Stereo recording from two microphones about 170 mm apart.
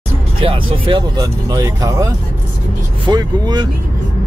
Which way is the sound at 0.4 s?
30° right (ahead or behind).